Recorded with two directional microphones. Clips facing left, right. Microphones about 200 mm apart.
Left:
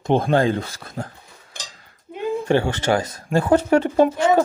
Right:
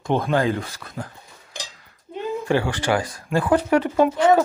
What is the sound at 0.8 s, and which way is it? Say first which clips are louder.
Speech: left 2 dB; 40° left (ahead or behind).